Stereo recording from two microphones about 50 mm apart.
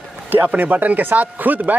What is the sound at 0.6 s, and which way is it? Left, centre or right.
Speech, right.